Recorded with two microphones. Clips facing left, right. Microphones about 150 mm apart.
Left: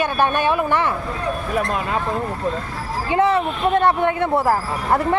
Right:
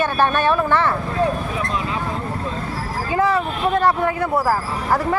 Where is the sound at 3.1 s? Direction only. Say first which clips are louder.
Left 2 dB; 25° left (ahead or behind).